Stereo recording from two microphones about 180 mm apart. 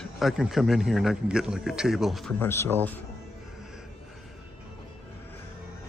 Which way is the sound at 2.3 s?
15° left (ahead or behind).